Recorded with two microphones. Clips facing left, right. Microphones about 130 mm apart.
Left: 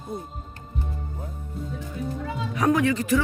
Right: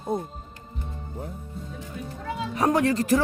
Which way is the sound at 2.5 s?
30° right (ahead or behind).